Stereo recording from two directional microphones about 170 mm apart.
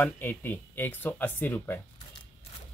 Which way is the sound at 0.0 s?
10° left (ahead or behind).